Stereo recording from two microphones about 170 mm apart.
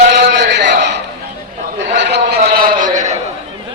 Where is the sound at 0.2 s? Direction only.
90° right; by 3.2 s 45° right (ahead or behind).